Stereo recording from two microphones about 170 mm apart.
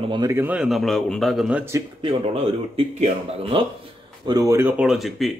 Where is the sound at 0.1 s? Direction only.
25° right (ahead or behind).